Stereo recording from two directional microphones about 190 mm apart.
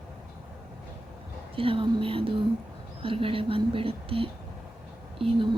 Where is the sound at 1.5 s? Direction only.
30° right (ahead or behind).